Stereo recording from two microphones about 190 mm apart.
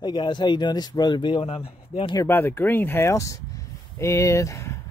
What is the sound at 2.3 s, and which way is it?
Speech, 10° left (ahead or behind).